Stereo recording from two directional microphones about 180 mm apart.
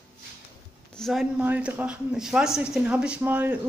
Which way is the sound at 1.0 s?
Centre (ahead or behind).